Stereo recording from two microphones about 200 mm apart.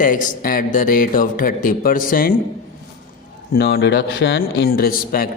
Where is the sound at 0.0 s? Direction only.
45° left (ahead or behind).